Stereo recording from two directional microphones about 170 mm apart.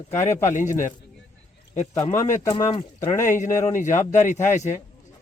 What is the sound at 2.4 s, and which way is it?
Speech, 25° left (ahead or behind).